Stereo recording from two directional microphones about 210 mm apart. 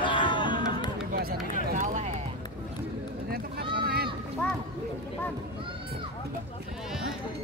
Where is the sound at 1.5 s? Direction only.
35° right (ahead or behind).